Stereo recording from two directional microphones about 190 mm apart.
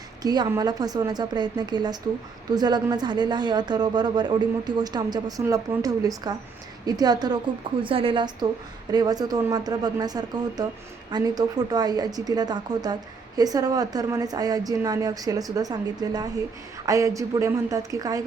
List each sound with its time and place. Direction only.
0.2 s a woman's voice: 20° right (ahead or behind)